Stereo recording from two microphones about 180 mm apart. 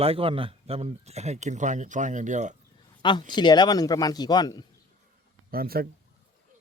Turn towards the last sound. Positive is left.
turn(degrees=-55)  # may be behind; listen again after turning